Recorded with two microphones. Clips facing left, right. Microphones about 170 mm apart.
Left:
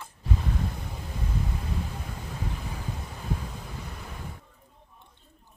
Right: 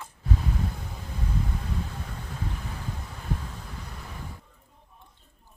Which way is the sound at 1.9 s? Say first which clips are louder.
Even; 10° left (ahead or behind).